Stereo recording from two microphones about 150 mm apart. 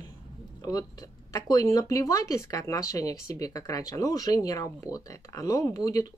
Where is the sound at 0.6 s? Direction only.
25° left (ahead or behind).